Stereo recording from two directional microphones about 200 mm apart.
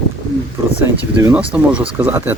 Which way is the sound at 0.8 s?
10° right (ahead or behind).